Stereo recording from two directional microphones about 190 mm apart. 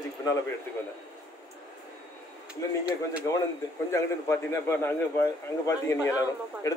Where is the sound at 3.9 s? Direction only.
15° left (ahead or behind).